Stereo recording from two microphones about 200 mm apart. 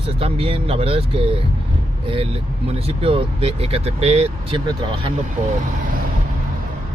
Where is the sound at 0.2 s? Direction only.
30° right (ahead or behind).